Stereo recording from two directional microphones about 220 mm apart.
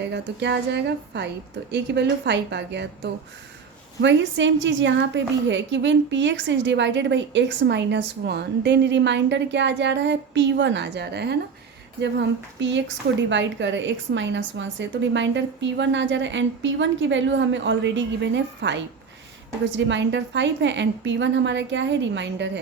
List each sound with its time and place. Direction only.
0.0 s a woman's voice: 50° right (ahead or behind)
12.5 s a woman's voice: 55° right (ahead or behind)